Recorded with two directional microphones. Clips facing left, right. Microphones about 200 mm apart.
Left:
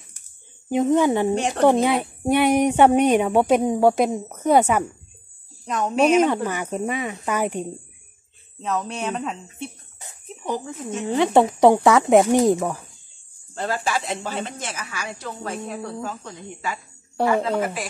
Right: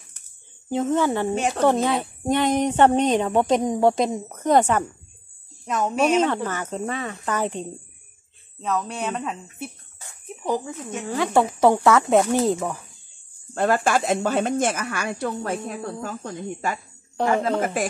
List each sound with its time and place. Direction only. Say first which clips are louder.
0.7 s speech: left 3 dB; 15° left (ahead or behind)
1.3 s speech: left 1 dB; centre (ahead or behind)
1.6 s speech: left 3 dB; 15° left (ahead or behind)
6.1 s speech: left 3 dB; 10° left (ahead or behind)
8.6 s speech: even; centre (ahead or behind)
10.2 s cricket: right 2 dB; 10° right (ahead or behind)
10.9 s speech: left 5 dB; 25° left (ahead or behind)
11.3 s speech: left 2 dB; 15° left (ahead or behind)
13.6 s a woman's voice: right 5 dB; 55° right (ahead or behind)